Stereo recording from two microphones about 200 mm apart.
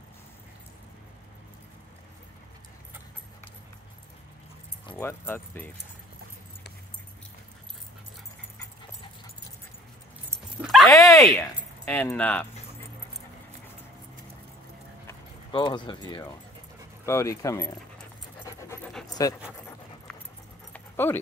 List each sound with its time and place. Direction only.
4.9 s speech: 10° left (ahead or behind)
10.6 s dog: centre (ahead or behind)
10.9 s speech: 15° left (ahead or behind)
15.0 s speech: 20° left (ahead or behind)
18.4 s pant: 15° left (ahead or behind)
19.2 s speech: 15° left (ahead or behind)
20.7 s dog: 10° left (ahead or behind)